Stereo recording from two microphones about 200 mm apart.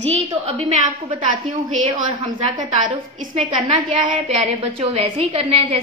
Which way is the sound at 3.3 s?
35° right (ahead or behind).